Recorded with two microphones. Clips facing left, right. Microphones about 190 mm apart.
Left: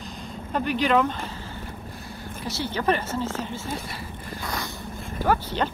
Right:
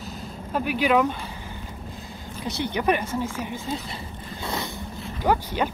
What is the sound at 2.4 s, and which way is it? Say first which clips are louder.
Speech: right 1 dB; 20° right (ahead or behind).